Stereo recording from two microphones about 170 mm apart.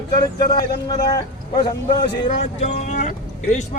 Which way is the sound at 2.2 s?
40° left (ahead or behind).